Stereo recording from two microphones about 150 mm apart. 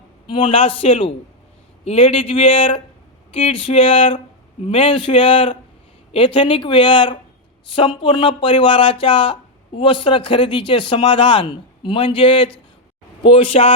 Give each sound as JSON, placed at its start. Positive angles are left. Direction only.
{"t": 0.3, "sound": "speech", "side_deg": 35}